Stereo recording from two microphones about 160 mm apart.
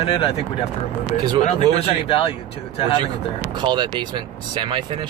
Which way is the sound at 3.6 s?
30° right (ahead or behind).